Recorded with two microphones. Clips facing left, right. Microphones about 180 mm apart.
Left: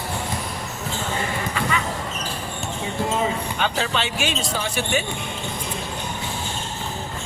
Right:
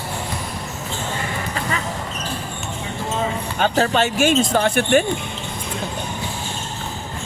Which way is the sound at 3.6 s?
45° right (ahead or behind).